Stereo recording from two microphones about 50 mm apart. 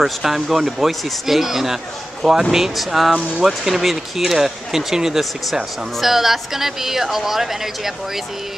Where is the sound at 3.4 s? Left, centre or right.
Centre.